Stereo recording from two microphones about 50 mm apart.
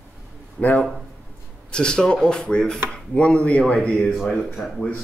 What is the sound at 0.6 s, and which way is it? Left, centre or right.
Speech, left.